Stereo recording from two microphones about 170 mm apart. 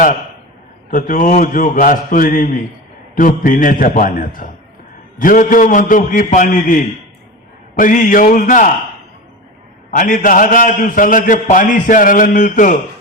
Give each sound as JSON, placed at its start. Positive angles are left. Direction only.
{"t": 0.9, "sound": "a man's voice", "side_deg": 55}
{"t": 9.9, "sound": "a man's voice", "side_deg": 50}